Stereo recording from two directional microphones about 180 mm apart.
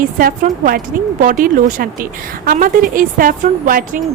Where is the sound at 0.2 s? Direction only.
50° right (ahead or behind).